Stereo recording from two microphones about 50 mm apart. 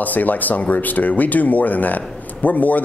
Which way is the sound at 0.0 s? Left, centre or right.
Left.